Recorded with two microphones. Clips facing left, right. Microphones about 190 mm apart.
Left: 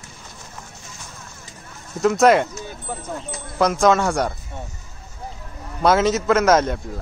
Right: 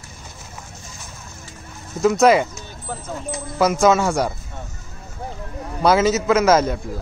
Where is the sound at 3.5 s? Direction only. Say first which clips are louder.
Right 1 dB; 5° right (ahead or behind).